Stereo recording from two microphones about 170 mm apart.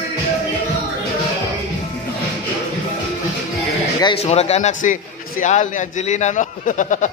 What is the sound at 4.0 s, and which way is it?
A man's voice, 35° left (ahead or behind).